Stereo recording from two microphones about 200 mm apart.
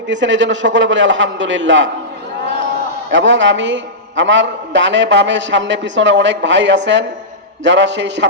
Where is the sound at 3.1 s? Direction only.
65° right (ahead or behind).